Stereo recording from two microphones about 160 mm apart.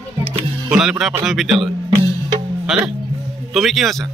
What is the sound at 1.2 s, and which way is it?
Speech, centre (ahead or behind).